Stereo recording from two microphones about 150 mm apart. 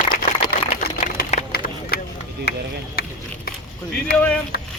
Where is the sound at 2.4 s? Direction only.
90° left.